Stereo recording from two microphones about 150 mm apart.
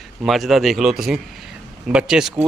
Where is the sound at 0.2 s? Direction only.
Centre (ahead or behind).